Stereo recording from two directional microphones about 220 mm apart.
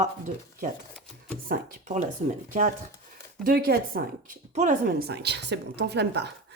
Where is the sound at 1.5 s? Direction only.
35° right (ahead or behind).